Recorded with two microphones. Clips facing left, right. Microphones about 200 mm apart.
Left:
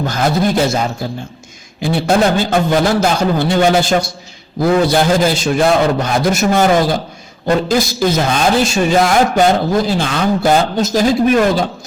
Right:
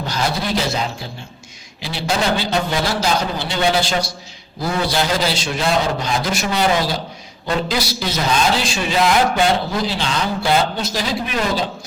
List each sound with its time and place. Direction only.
0.0 s a man's voice: 50° left (ahead or behind)